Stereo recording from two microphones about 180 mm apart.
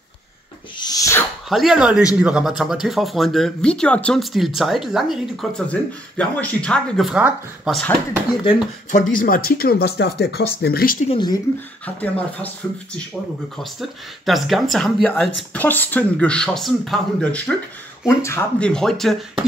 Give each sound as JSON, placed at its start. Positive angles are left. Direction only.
{"t": 0.7, "sound": "sneeze", "side_deg": 20}
{"t": 1.5, "sound": "speech", "side_deg": 0}
{"t": 8.9, "sound": "speech", "side_deg": 50}
{"t": 11.1, "sound": "speech", "side_deg": 25}
{"t": 11.8, "sound": "a man's voice", "side_deg": 10}
{"t": 18.7, "sound": "speech", "side_deg": 5}